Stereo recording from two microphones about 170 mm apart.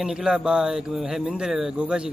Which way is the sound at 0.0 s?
5° right (ahead or behind).